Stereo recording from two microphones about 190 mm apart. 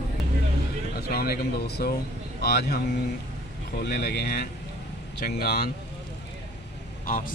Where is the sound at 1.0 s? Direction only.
55° left (ahead or behind).